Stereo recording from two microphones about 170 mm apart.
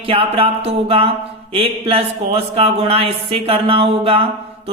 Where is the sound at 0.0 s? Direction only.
30° right (ahead or behind).